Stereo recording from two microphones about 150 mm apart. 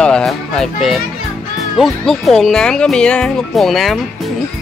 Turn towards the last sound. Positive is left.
turn(degrees=0)  # may be behind; listen again after turning